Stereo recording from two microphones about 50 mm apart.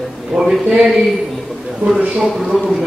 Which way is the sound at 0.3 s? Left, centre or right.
Centre.